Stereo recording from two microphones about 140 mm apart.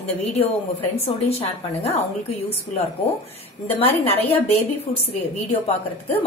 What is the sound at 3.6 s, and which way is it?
Speech, 45° left (ahead or behind).